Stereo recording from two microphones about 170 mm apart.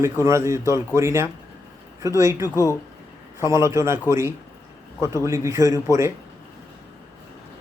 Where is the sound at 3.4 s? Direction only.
15° right (ahead or behind).